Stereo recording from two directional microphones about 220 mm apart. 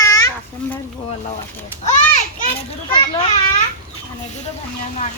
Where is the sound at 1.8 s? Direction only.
30° left (ahead or behind).